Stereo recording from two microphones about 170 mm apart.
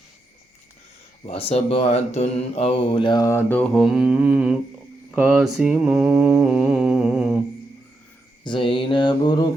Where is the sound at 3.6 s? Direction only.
Centre (ahead or behind).